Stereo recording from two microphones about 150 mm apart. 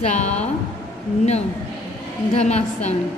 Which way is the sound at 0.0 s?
50° left (ahead or behind).